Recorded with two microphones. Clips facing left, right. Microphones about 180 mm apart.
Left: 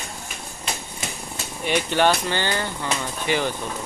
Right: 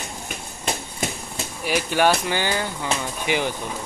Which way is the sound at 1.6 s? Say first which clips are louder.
Even; 5° right (ahead or behind).